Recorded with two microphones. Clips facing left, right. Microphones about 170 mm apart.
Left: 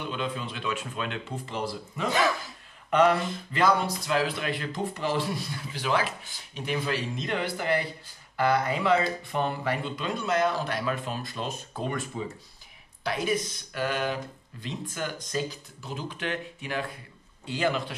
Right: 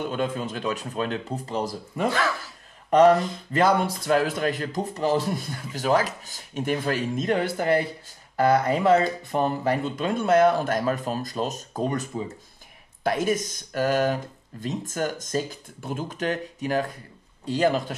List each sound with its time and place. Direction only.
0.0 s speech: 45° right (ahead or behind)
2.0 s speech: 15° left (ahead or behind)
2.9 s speech: 40° right (ahead or behind)